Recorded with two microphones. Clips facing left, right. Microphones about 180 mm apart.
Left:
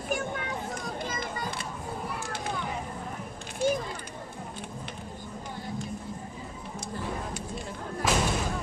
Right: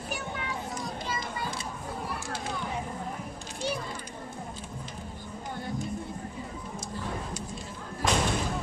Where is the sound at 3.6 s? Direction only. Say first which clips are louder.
Left 6 dB; 45° left (ahead or behind).